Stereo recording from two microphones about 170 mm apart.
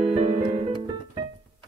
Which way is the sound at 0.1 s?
35° right (ahead or behind).